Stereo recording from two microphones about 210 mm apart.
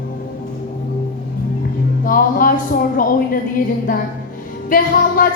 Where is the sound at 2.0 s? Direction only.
40° left (ahead or behind).